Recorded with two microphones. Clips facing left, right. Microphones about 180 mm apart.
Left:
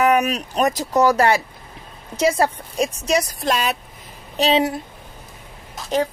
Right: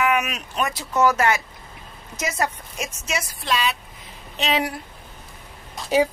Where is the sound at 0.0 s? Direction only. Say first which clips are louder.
Left 5 dB; 35° left (ahead or behind).